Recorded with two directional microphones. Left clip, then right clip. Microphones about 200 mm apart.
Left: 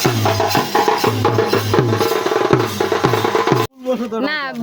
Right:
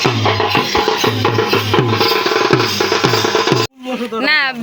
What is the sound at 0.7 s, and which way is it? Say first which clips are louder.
Music: right 1 dB; 10° right (ahead or behind).